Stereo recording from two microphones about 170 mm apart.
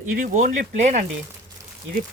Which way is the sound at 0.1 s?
50° right (ahead or behind).